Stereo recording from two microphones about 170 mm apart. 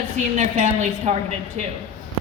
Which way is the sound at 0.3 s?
45° right (ahead or behind).